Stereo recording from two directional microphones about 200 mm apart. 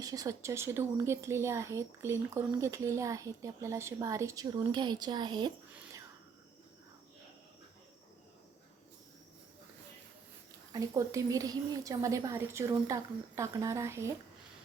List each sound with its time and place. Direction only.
0.0 s a woman's voice: 15° right (ahead or behind)
10.7 s a woman's voice: 15° right (ahead or behind)